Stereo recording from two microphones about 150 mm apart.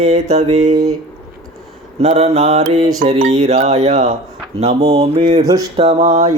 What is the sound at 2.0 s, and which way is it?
Speech, 45° right (ahead or behind).